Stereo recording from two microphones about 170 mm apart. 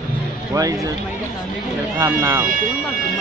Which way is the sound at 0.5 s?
20° right (ahead or behind).